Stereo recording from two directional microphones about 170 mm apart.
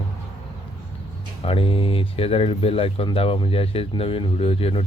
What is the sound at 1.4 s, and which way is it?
A man's voice, 35° left (ahead or behind).